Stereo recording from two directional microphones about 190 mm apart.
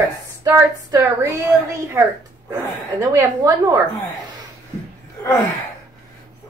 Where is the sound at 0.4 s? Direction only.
15° right (ahead or behind).